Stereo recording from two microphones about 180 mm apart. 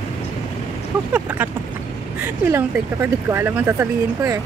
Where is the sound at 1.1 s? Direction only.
10° right (ahead or behind).